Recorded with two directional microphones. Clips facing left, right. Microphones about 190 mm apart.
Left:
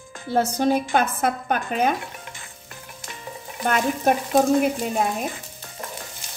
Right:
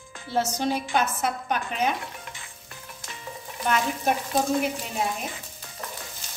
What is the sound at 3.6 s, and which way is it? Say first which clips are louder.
A woman's voice: left 4 dB; 50° left (ahead or behind).